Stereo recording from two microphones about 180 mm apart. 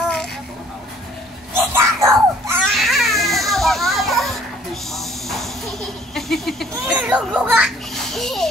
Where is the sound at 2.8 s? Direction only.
Centre (ahead or behind).